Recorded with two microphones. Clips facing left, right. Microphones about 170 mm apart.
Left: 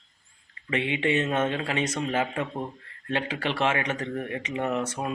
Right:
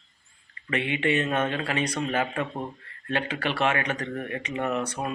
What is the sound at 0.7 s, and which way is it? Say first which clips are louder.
Speech: even; 20° left (ahead or behind).